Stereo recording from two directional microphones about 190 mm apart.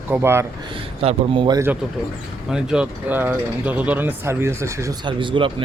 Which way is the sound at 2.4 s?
5° right (ahead or behind).